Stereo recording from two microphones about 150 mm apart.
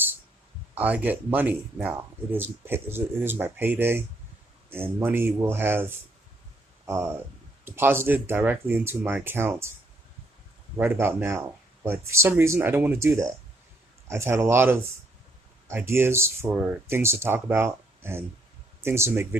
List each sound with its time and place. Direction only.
0.8 s speech: 10° right (ahead or behind)
10.8 s speech: 15° right (ahead or behind)